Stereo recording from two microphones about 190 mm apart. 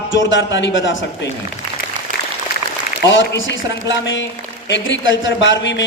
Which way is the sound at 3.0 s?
75° left (ahead or behind).